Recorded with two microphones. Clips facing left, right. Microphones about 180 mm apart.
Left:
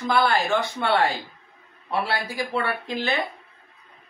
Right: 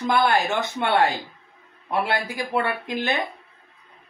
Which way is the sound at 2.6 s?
15° right (ahead or behind).